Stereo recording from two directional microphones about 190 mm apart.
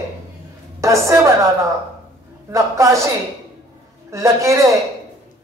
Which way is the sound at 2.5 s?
15° right (ahead or behind).